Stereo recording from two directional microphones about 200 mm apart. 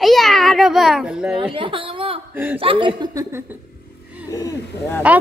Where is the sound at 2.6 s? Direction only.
25° right (ahead or behind).